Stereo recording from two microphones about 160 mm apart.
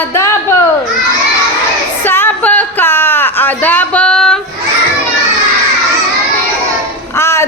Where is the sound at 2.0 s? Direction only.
15° left (ahead or behind).